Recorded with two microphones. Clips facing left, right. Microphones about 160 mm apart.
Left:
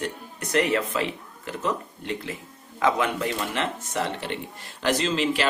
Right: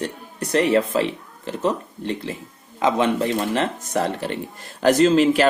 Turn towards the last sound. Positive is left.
turn(degrees=-45)  # may be behind; listen again after turning